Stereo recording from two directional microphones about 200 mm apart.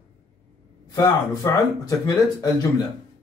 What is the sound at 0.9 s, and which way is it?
Speech, 15° left (ahead or behind).